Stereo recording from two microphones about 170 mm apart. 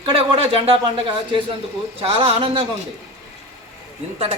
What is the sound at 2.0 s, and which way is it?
Speech, 35° right (ahead or behind).